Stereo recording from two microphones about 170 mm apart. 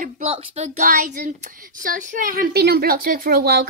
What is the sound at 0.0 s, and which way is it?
A woman's voice, 40° right (ahead or behind).